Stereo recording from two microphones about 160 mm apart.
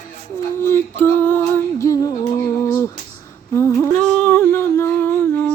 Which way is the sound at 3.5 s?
15° left (ahead or behind).